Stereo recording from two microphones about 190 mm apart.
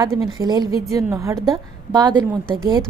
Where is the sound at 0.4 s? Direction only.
20° right (ahead or behind).